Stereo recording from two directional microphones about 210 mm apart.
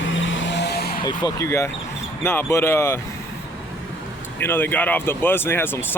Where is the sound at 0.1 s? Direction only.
65° left (ahead or behind); by 1.0 s 50° left (ahead or behind).